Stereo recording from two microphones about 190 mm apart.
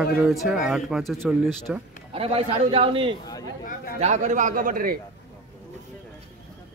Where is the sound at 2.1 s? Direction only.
30° right (ahead or behind); by 5.0 s 45° right (ahead or behind).